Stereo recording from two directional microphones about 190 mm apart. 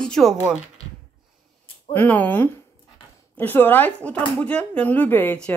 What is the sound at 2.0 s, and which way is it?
Speech, 10° left (ahead or behind).